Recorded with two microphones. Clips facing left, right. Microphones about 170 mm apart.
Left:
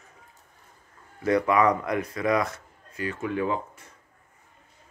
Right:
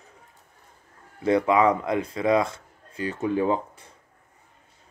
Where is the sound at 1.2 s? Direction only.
25° right (ahead or behind).